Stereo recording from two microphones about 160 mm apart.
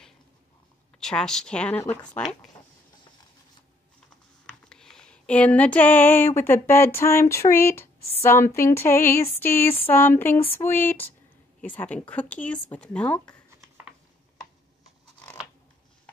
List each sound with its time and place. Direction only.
0.9 s speech: 5° left (ahead or behind)
4.5 s a sound: 5° left (ahead or behind)
8.2 s speech: 15° left (ahead or behind)